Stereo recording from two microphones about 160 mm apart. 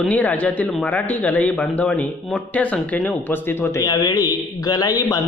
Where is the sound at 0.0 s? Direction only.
10° left (ahead or behind).